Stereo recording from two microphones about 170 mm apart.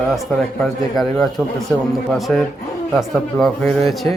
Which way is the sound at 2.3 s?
5° left (ahead or behind).